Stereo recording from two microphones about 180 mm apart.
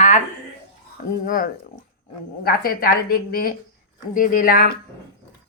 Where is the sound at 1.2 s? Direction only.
50° left (ahead or behind).